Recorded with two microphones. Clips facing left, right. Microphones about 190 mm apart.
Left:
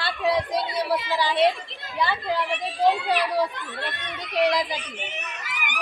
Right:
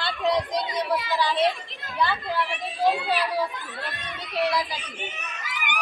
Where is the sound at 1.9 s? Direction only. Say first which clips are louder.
Left 1 dB; 15° left (ahead or behind).